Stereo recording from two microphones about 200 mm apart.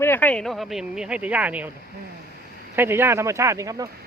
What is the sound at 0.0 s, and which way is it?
Speech, 10° left (ahead or behind).